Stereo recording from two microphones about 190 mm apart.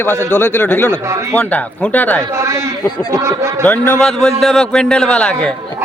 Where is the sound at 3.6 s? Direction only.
10° left (ahead or behind).